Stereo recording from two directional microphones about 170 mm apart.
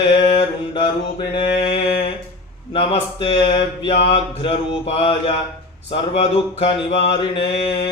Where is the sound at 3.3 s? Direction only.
35° left (ahead or behind).